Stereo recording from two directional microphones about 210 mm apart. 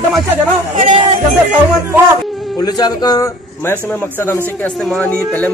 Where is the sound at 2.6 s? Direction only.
20° left (ahead or behind).